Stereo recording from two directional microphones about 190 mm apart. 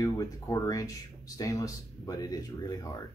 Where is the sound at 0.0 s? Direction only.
20° left (ahead or behind).